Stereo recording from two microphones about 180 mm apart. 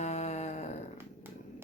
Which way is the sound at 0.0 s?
40° left (ahead or behind).